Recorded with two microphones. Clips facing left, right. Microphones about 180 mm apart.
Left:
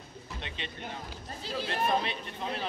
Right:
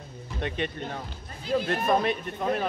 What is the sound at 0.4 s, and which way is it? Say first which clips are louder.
A man's voice: right 12 dB; 50° right (ahead or behind).